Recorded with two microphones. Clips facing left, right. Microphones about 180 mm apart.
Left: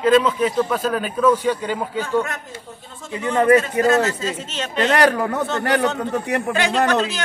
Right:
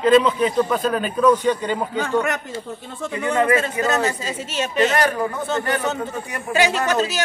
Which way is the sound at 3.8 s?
50° left (ahead or behind).